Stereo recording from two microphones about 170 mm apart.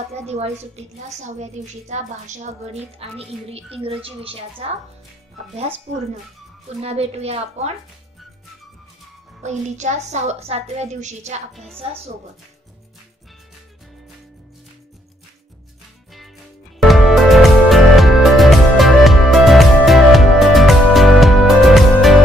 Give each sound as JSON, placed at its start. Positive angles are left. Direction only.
{"t": 0.1, "sound": "a woman's voice", "side_deg": -40}
{"t": 6.8, "sound": "a woman's voice", "side_deg": -35}
{"t": 9.4, "sound": "a woman's voice", "side_deg": -45}
{"t": 11.5, "sound": "a woman's voice", "side_deg": 0}
{"t": 11.8, "sound": "a woman's voice", "side_deg": -35}
{"t": 16.8, "sound": "music", "side_deg": 0}